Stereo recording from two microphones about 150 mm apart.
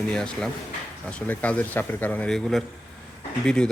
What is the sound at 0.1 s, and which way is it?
Speech, 5° left (ahead or behind).